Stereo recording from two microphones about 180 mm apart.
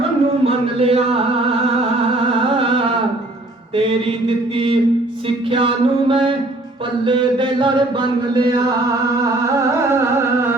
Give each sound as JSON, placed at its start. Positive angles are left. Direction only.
{"t": 0.0, "sound": "a sound", "side_deg": -35}
{"t": 2.4, "sound": "music", "side_deg": -30}
{"t": 5.5, "sound": "mantra", "side_deg": -30}
{"t": 9.2, "sound": "music", "side_deg": -15}